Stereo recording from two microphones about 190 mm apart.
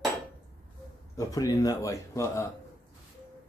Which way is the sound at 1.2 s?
20° left (ahead or behind).